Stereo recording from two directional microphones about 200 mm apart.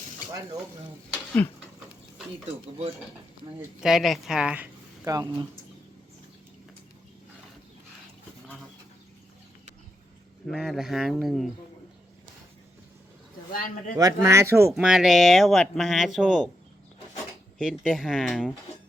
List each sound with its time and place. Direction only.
3.8 s speech: centre (ahead or behind); by 5.5 s 20° right (ahead or behind)
10.4 s speech: centre (ahead or behind)
13.5 s speech: 45° left (ahead or behind)
14.0 s speech: 15° right (ahead or behind)
14.7 s speech: 5° right (ahead or behind)
17.6 s speech: centre (ahead or behind)